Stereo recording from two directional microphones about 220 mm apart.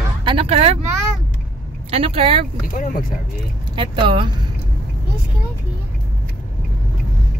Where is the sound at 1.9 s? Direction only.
25° right (ahead or behind).